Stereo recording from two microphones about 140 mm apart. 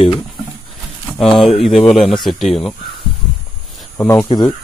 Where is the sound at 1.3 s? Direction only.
40° left (ahead or behind).